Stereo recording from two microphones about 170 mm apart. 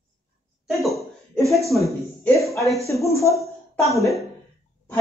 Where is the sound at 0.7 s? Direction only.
Centre (ahead or behind).